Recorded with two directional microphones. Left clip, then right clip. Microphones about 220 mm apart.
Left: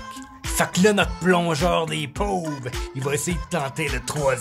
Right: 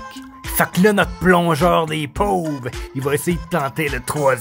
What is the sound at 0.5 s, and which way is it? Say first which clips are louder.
Speech: right 3 dB; 20° right (ahead or behind).